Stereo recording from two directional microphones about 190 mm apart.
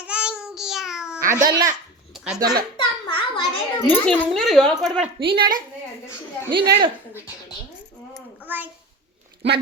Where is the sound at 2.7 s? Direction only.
25° left (ahead or behind).